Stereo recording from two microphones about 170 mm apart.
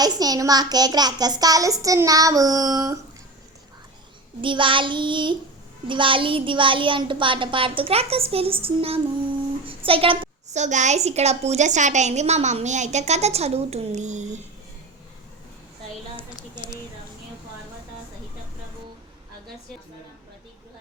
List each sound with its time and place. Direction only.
0.0 s a child's voice: 20° right (ahead or behind)
4.4 s a child's voice: 30° right (ahead or behind)